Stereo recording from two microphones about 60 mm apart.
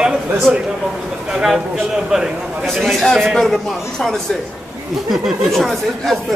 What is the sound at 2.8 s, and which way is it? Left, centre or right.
Speech, centre.